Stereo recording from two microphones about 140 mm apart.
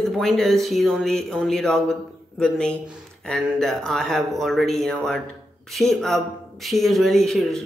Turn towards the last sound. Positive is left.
turn(degrees=0)  # may be behind; listen again after turning